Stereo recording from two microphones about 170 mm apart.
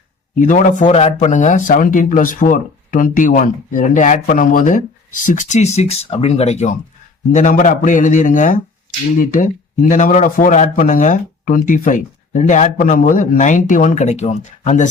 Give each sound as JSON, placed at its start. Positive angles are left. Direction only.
{"t": 0.3, "sound": "speech", "side_deg": 50}
{"t": 9.9, "sound": "speech", "side_deg": 50}